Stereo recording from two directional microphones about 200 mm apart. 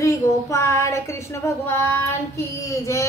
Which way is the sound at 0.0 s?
15° left (ahead or behind).